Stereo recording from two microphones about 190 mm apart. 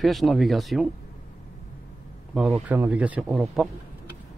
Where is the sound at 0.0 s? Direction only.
Centre (ahead or behind).